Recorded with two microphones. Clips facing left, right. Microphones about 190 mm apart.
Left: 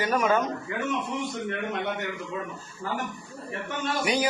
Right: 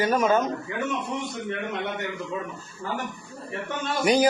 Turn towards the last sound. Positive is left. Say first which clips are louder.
# right 6 dB
turn(degrees=-40)  # may be behind; listen again after turning